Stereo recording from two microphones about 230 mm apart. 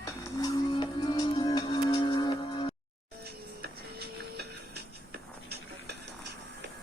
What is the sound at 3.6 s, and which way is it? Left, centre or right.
Printer, right.